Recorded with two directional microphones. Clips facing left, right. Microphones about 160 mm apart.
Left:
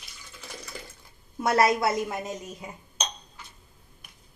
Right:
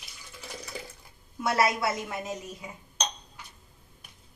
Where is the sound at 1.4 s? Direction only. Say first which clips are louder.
Left 4 dB; 45° left (ahead or behind).